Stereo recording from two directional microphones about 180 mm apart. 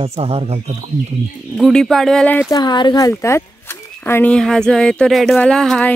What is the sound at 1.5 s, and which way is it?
Speech, centre (ahead or behind).